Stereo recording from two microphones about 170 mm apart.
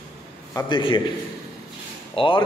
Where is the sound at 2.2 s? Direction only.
30° left (ahead or behind).